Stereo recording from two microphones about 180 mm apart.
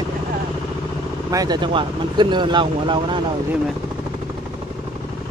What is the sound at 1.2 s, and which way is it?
Speech, 20° right (ahead or behind).